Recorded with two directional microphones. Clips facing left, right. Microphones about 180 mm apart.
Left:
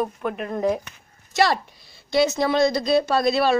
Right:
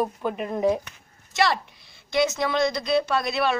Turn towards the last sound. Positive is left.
turn(degrees=35)  # may be behind; listen again after turning